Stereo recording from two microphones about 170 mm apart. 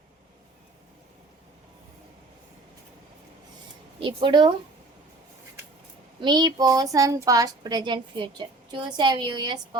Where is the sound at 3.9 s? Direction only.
30° right (ahead or behind).